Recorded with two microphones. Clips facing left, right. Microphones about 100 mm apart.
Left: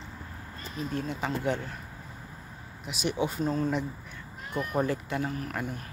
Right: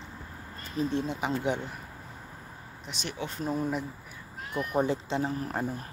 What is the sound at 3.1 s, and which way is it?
Speech, 15° left (ahead or behind).